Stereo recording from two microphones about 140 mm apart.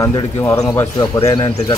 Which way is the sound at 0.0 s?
20° left (ahead or behind).